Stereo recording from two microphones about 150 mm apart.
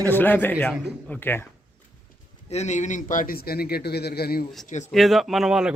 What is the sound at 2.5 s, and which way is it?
A man's voice, 50° left (ahead or behind).